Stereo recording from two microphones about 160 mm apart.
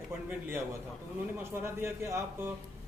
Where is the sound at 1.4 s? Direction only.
15° right (ahead or behind).